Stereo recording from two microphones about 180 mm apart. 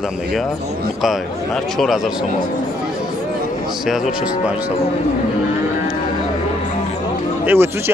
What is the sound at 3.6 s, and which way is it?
Speech, centre (ahead or behind).